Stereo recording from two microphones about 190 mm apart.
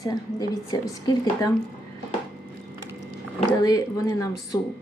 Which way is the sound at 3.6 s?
20° left (ahead or behind).